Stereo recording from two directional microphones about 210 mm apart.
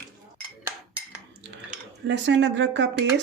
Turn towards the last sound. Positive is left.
turn(degrees=-60)  # may be behind; listen again after turning